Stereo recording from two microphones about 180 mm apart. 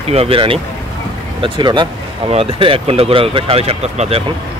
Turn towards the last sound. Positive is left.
turn(degrees=-35)  # may be behind; listen again after turning